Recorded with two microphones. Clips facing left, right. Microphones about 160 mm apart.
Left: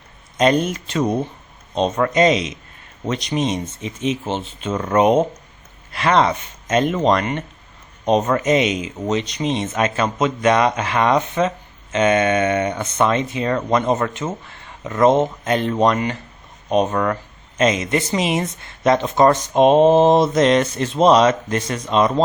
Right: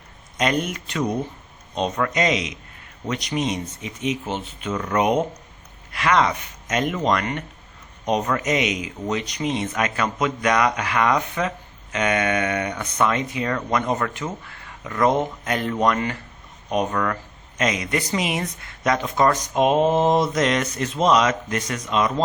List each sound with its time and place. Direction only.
0.3 s speech: 30° left (ahead or behind)